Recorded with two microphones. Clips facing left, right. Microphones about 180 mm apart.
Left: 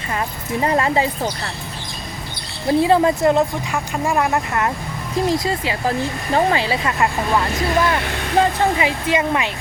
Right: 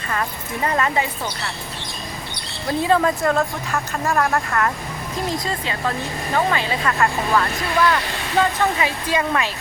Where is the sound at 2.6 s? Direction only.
25° left (ahead or behind).